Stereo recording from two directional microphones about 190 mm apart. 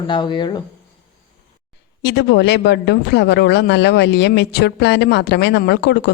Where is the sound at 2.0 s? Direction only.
60° left (ahead or behind).